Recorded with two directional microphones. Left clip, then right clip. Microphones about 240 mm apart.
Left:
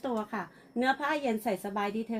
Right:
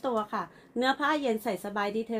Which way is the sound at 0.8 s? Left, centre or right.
Centre.